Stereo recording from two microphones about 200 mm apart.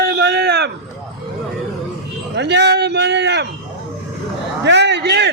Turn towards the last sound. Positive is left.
turn(degrees=-55)  # may be behind; listen again after turning